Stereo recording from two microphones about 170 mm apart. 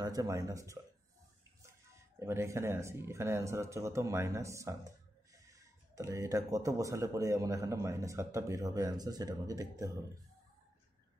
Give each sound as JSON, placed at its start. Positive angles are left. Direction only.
{"t": 0.0, "sound": "speech", "side_deg": -20}
{"t": 2.1, "sound": "speech", "side_deg": -15}
{"t": 5.9, "sound": "speech", "side_deg": -15}